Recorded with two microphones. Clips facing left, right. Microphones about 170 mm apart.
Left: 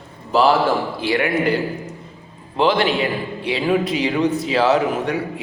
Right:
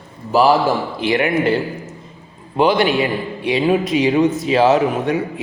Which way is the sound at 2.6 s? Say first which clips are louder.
Right 2 dB; 15° right (ahead or behind).